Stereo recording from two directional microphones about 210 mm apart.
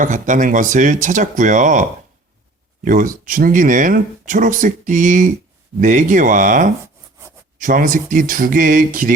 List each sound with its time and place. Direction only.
0.0 s speech: 40° right (ahead or behind)
6.8 s a sound: 15° right (ahead or behind)
7.6 s speech: 40° right (ahead or behind)